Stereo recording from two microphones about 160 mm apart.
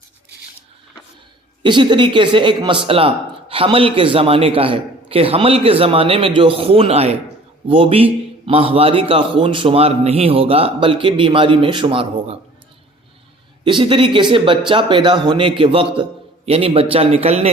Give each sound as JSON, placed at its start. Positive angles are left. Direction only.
{"t": 1.6, "sound": "a man's voice", "side_deg": -30}
{"t": 13.7, "sound": "a man's voice", "side_deg": -30}